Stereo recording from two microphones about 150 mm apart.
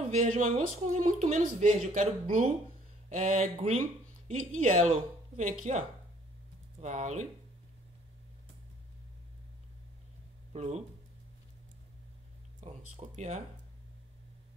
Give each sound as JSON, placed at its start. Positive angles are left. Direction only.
{"t": 0.1, "sound": "speech", "side_deg": -50}
{"t": 10.5, "sound": "speech", "side_deg": -50}
{"t": 12.6, "sound": "speech", "side_deg": -50}